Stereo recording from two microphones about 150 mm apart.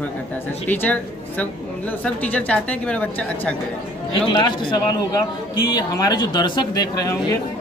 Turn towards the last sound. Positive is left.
turn(degrees=25)  # may be behind; listen again after turning